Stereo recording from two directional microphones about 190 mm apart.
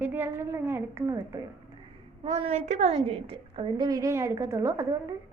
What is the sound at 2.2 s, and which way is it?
A woman's voice, 30° right (ahead or behind).